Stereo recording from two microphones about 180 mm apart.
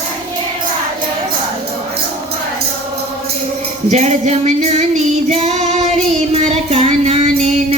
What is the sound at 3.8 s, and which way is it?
Child singing, 35° right (ahead or behind).